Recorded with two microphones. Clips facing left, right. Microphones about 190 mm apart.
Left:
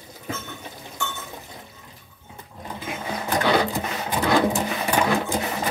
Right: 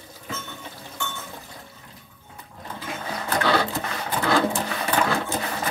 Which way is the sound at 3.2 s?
15° left (ahead or behind).